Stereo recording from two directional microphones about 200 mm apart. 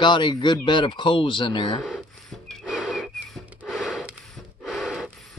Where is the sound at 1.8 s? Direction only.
Centre (ahead or behind).